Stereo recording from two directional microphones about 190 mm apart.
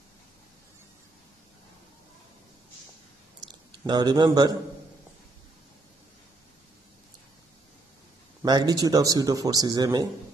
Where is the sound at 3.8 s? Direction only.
20° right (ahead or behind).